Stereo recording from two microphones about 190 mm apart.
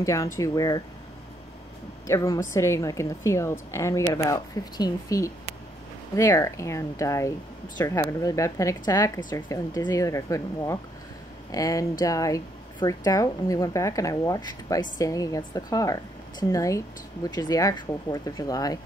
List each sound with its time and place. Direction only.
0.0 s a woman's voice: 15° left (ahead or behind)
2.0 s a woman's voice: 15° left (ahead or behind)